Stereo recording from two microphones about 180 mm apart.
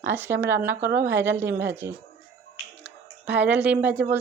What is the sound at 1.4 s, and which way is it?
Speech, 70° right (ahead or behind).